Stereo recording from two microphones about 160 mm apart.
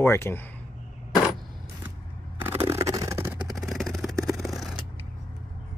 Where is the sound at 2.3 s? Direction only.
15° right (ahead or behind).